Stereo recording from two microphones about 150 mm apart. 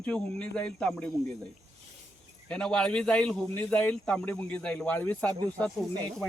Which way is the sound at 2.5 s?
5° left (ahead or behind).